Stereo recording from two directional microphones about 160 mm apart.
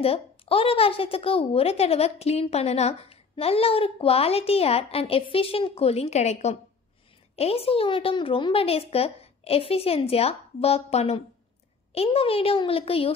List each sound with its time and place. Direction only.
0.0 s speech: 35° left (ahead or behind)